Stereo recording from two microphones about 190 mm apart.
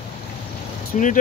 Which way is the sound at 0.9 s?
40° left (ahead or behind).